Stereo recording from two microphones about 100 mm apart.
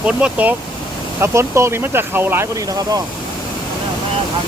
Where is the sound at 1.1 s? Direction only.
25° right (ahead or behind).